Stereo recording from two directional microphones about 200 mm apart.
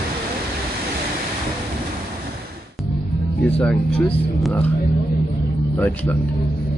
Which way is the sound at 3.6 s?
5° left (ahead or behind).